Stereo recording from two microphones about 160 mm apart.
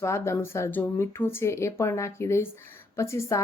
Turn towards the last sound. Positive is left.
turn(degrees=15)  # may be behind; listen again after turning